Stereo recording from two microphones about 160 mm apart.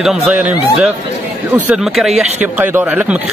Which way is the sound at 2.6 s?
10° right (ahead or behind).